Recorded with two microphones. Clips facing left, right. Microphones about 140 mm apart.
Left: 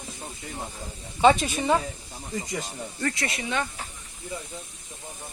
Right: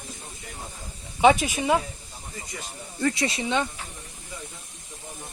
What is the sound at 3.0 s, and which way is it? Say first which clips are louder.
Speech: right 5 dB; 20° right (ahead or behind).